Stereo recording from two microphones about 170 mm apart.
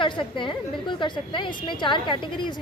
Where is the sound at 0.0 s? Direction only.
30° left (ahead or behind).